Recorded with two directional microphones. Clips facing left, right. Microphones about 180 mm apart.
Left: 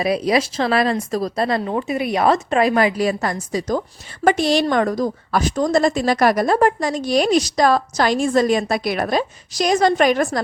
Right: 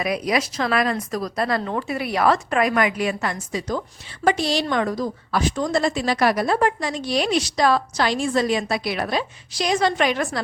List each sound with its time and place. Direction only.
0.0 s a woman's voice: 30° left (ahead or behind)